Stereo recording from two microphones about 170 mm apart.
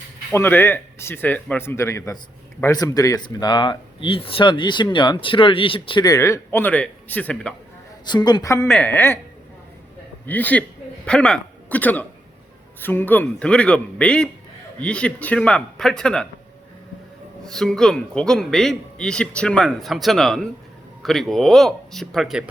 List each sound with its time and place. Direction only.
0.3 s a man's voice: 15° left (ahead or behind)
8.0 s a man's voice: 25° left (ahead or behind)
10.2 s a man's voice: 10° left (ahead or behind)
17.4 s a man's voice: 5° left (ahead or behind)